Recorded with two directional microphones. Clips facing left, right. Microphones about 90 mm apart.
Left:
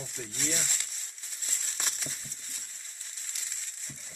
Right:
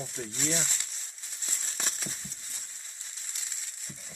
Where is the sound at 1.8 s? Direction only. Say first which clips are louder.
Right 1 dB; 35° right (ahead or behind).